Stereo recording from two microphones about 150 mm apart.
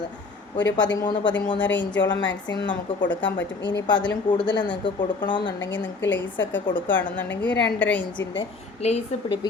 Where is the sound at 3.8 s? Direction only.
30° left (ahead or behind).